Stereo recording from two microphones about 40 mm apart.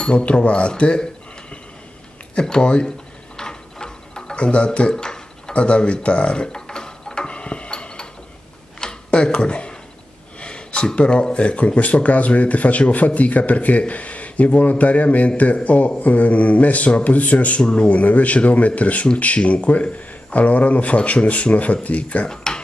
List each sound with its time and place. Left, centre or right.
0.0 s speech: left
2.3 s speech: left
3.3 s a sound: centre
8.8 s tick-tock: left
10.4 s speech: left
22.3 s a sound: centre